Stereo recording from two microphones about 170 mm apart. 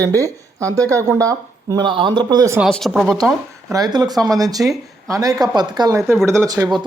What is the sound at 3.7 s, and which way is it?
Speech, 25° right (ahead or behind).